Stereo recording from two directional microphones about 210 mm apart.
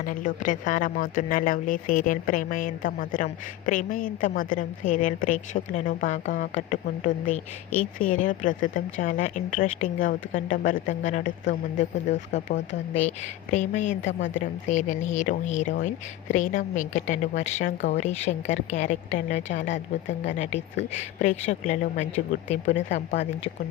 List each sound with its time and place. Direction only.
0.0 s speech: 40° left (ahead or behind)
14.1 s speech: 60° left (ahead or behind)
14.4 s speech: 35° left (ahead or behind)
19.7 s speech: 60° left (ahead or behind)
20.9 s speech: 35° left (ahead or behind)